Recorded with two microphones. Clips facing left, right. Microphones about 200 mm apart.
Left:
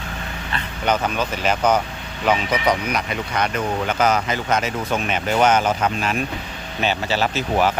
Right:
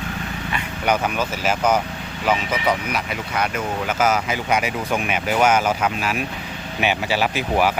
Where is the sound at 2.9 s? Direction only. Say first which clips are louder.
Left 1 dB; 5° right (ahead or behind).